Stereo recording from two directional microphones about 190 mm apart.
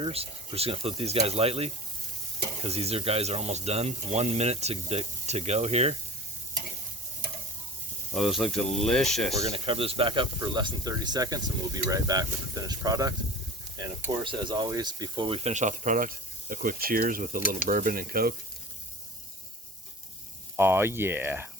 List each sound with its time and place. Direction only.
0.0 s speech: 30° right (ahead or behind)
8.1 s speech: centre (ahead or behind)
9.4 s speech: 30° right (ahead or behind)
14.3 s speech: 25° right (ahead or behind); by 17.6 s 45° right (ahead or behind)
17.7 s sizzle: 45° right (ahead or behind)
20.6 s speech: 10° right (ahead or behind)